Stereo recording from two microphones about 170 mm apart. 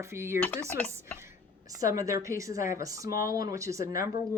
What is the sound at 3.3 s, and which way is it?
Speech, 20° right (ahead or behind).